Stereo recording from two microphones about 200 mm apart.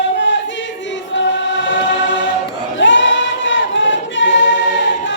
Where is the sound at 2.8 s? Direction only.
65° left (ahead or behind).